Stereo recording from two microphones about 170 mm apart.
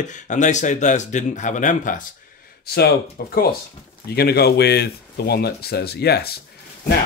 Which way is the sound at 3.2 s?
65° left (ahead or behind).